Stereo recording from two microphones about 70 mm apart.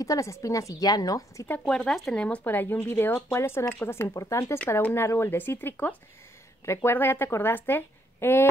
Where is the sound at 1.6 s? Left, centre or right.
Centre.